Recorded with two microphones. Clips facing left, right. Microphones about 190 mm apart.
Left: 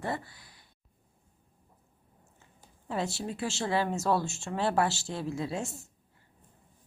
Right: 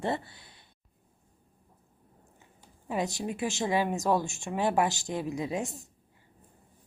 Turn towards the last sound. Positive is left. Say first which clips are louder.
# right 2 dB
turn(degrees=-15)  # may be behind; listen again after turning